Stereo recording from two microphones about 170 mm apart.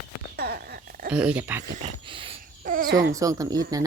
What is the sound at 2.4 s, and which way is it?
Babbling, 55° right (ahead or behind).